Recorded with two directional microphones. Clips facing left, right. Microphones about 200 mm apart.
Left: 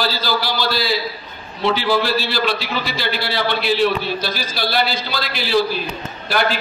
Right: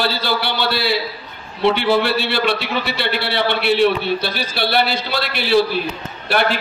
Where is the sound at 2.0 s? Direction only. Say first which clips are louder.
Right 1 dB; 65° right (ahead or behind).